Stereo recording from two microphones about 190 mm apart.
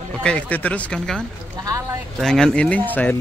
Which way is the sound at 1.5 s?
15° right (ahead or behind).